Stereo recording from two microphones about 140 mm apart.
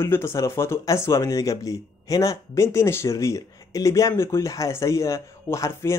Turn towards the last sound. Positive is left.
turn(degrees=20)  # may be behind; listen again after turning